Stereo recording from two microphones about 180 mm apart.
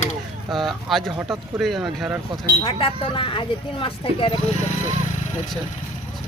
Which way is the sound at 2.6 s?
30° left (ahead or behind).